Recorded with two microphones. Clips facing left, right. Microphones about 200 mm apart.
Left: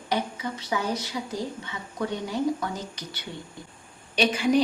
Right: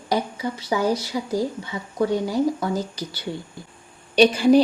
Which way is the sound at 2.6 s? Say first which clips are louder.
Right 7 dB; 35° right (ahead or behind).